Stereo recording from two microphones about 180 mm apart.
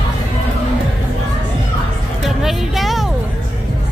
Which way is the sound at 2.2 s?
Centre (ahead or behind).